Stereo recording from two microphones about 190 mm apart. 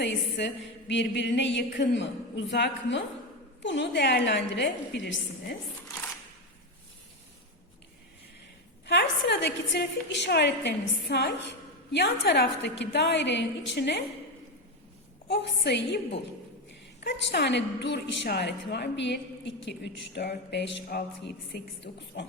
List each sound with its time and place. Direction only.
0.3 s a woman's voice: 70° left (ahead or behind)
8.9 s a woman's voice: 65° left (ahead or behind)
15.3 s a woman's voice: 65° left (ahead or behind)
17.0 s a woman's voice: 65° left (ahead or behind)
21.9 s a man's voice: 50° left (ahead or behind)